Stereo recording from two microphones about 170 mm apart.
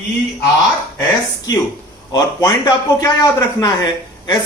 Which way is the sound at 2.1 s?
20° left (ahead or behind).